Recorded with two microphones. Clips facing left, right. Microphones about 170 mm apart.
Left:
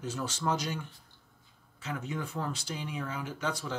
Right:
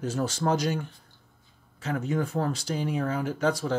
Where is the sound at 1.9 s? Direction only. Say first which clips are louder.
Right 8 dB; 45° right (ahead or behind).